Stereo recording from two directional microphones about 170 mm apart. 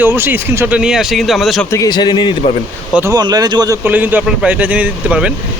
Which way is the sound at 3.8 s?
10° right (ahead or behind).